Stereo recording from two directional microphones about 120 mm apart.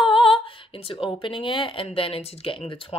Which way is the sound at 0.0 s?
45° left (ahead or behind).